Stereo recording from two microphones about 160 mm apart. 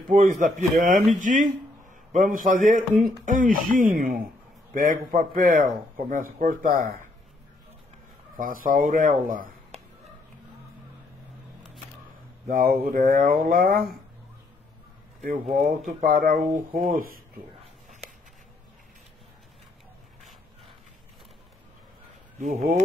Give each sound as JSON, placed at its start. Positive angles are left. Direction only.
{"t": 0.1, "sound": "a man's voice", "side_deg": -55}
{"t": 8.4, "sound": "a man's voice", "side_deg": -60}
{"t": 12.4, "sound": "a man's voice", "side_deg": -65}
{"t": 15.2, "sound": "a man's voice", "side_deg": -60}